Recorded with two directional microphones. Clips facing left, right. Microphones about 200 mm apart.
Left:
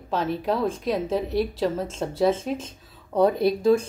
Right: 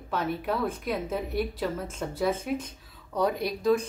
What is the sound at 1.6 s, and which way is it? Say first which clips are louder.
Speech: left 6 dB; 25° left (ahead or behind).